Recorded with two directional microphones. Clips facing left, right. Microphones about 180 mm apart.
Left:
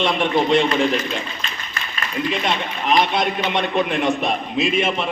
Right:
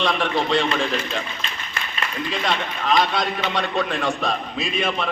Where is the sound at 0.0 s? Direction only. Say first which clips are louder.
Left 3 dB; 25° left (ahead or behind).